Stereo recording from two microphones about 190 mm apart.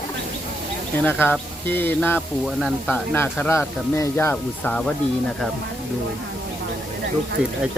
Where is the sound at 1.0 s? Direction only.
10° left (ahead or behind).